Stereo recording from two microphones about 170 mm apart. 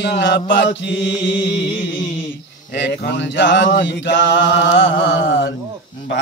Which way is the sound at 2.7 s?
85° left.